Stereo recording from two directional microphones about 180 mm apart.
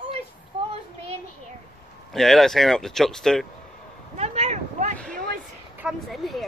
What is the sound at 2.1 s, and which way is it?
Speech, centre (ahead or behind).